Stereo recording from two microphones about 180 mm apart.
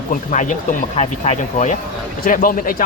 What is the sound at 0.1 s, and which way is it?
Speech, 45° left (ahead or behind).